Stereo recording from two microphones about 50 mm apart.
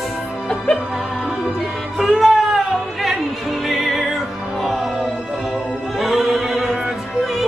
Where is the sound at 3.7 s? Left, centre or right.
Centre.